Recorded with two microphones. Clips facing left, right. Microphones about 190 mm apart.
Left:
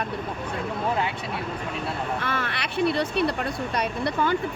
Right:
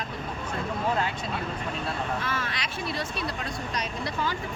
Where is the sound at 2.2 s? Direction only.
60° left (ahead or behind).